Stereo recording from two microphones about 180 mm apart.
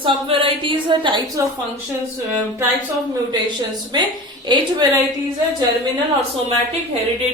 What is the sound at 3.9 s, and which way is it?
Speech, 25° right (ahead or behind).